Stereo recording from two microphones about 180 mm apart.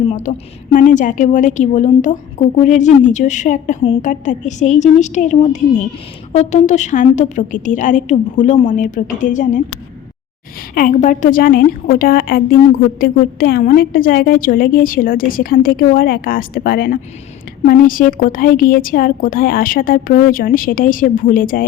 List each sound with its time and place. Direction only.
0.1 s a woman's voice: 45° left (ahead or behind)
10.8 s a woman's voice: 45° left (ahead or behind)